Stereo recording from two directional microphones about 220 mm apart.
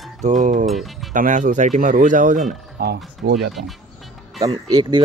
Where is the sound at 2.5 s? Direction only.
45° right (ahead or behind).